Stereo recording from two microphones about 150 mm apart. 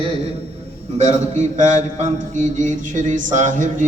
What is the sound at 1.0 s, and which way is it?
A man's voice, 50° right (ahead or behind).